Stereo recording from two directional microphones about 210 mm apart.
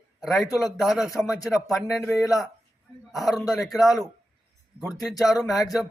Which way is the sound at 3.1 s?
Centre (ahead or behind).